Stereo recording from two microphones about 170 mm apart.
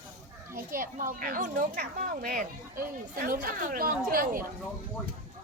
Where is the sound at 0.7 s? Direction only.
55° right (ahead or behind).